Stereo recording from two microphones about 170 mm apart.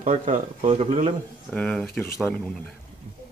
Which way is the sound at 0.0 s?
50° right (ahead or behind).